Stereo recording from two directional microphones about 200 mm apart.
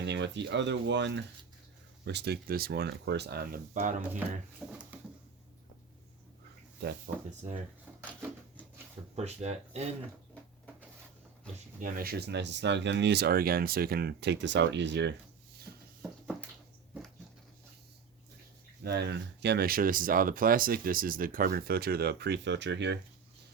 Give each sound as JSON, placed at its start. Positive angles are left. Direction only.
{"t": 0.0, "sound": "speech", "side_deg": -60}
{"t": 4.6, "sound": "speech", "side_deg": 0}
{"t": 7.1, "sound": "speech", "side_deg": -40}
{"t": 9.1, "sound": "speech", "side_deg": -35}
{"t": 11.8, "sound": "speech", "side_deg": -45}
{"t": 18.8, "sound": "speech", "side_deg": -55}